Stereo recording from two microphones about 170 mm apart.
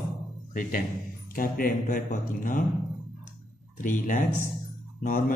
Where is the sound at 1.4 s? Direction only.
55° left (ahead or behind).